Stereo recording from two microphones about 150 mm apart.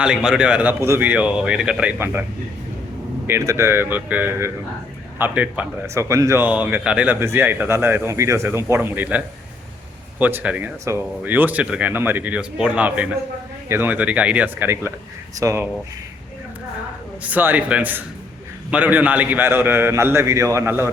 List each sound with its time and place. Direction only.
0.0 s speech: 5° right (ahead or behind)
3.2 s speech: 20° right (ahead or behind)
17.2 s speech: 10° right (ahead or behind)